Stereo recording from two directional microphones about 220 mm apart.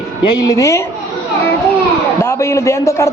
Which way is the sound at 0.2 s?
15° left (ahead or behind).